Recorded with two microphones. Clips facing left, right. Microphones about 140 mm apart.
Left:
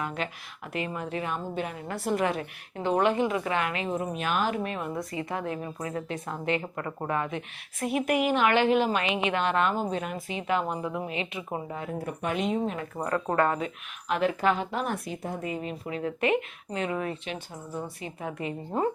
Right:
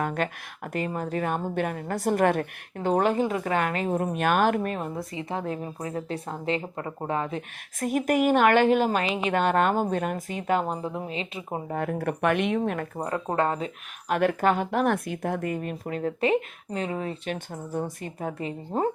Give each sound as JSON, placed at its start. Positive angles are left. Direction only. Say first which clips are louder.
{"t": 0.0, "sound": "speech", "louder": "right 5 dB", "side_deg": -50}
{"t": 4.9, "sound": "speech", "louder": "even", "side_deg": -30}
{"t": 11.7, "sound": "speech", "louder": "right 6 dB", "side_deg": -55}
{"t": 13.0, "sound": "speech", "louder": "left 2 dB", "side_deg": -25}
{"t": 14.1, "sound": "speech", "louder": "right 2 dB", "side_deg": -50}
{"t": 17.2, "sound": "speech", "louder": "right 4 dB", "side_deg": -50}